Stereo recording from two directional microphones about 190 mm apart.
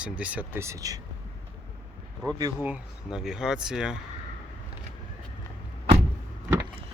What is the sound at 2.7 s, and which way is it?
Speech, 5° right (ahead or behind).